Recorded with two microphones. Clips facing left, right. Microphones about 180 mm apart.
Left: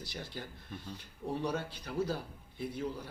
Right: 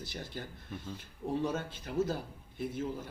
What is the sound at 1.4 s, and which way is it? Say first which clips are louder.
A man's voice: right 1 dB; 20° right (ahead or behind).